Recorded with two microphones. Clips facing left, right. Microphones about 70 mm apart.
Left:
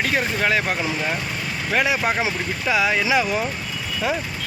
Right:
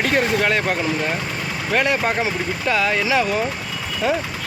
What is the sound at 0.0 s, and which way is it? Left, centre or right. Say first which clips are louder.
Speech: right 3 dB; centre.